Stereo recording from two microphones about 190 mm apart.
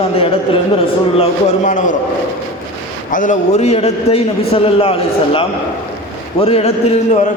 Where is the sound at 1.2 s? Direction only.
40° left (ahead or behind).